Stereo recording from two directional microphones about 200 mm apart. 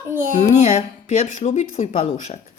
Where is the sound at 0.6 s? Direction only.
35° left (ahead or behind).